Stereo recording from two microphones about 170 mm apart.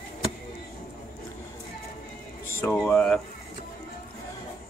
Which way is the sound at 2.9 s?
5° left (ahead or behind).